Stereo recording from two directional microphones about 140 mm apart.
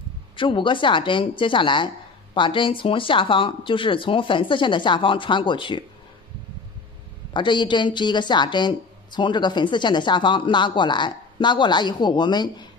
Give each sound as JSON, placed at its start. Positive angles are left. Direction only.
{"t": 0.4, "sound": "a woman's voice", "side_deg": 35}
{"t": 7.3, "sound": "a woman's voice", "side_deg": 35}